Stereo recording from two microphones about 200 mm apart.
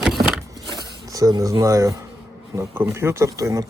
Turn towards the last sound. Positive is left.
turn(degrees=-15)  # may be behind; listen again after turning